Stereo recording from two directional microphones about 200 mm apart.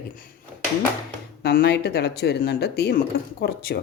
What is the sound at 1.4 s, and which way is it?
Speech, 50° left (ahead or behind).